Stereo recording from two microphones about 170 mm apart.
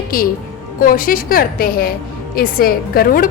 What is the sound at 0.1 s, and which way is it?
A woman's voice, 55° left (ahead or behind).